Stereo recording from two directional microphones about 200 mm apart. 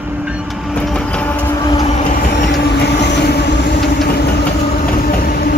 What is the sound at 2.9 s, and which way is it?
Vehicle, 60° left (ahead or behind).